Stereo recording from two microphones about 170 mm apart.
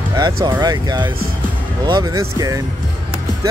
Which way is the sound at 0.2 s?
20° right (ahead or behind).